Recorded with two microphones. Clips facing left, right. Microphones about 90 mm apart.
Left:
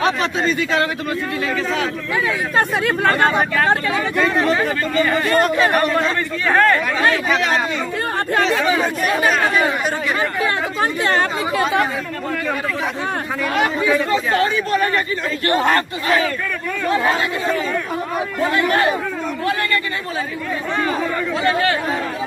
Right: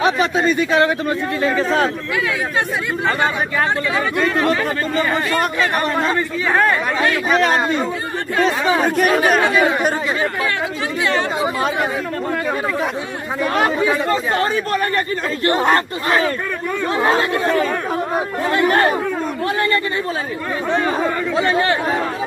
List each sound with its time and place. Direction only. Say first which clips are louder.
0.6 s a man's voice: right 4 dB; 25° right (ahead or behind)
1.4 s speech: right 6 dB; 35° right (ahead or behind)
3.0 s speech: left 2 dB; 50° left (ahead or behind)
6.5 s speech: left 2 dB; 10° right (ahead or behind)
7.2 s speech: right 2 dB; 40° right (ahead or behind)
8.7 s speech: right 3 dB; 60° right (ahead or behind)
10.8 s speech: left 3 dB; 45° left (ahead or behind)
13.6 s a man's voice: even; 30° right (ahead or behind)
14.3 s speech: left 1 dB; 40° right (ahead or behind)
15.4 s a man's voice: right 1 dB; 25° right (ahead or behind)
18.5 s speech: right 3 dB; 30° right (ahead or behind)
21.4 s a man's voice: right 1 dB; 25° right (ahead or behind)